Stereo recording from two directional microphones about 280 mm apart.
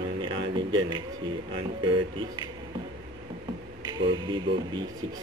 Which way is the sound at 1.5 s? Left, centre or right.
Centre.